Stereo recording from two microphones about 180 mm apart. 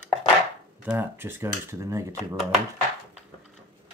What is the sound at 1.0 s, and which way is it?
Speech, 10° right (ahead or behind).